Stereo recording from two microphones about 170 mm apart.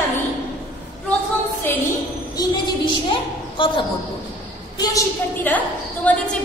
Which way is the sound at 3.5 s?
30° left (ahead or behind).